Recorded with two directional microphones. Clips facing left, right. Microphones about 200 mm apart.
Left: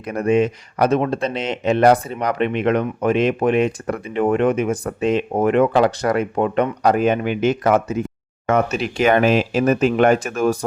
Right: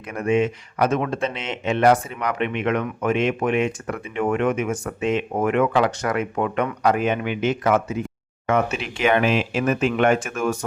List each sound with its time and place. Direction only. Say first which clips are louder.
0.0 s speech: left 3 dB; 35° left (ahead or behind)